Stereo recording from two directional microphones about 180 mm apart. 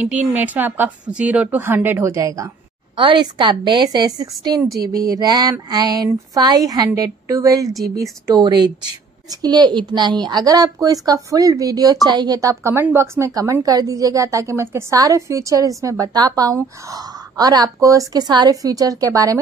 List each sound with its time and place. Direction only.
0.0 s a woman's voice: 5° right (ahead or behind)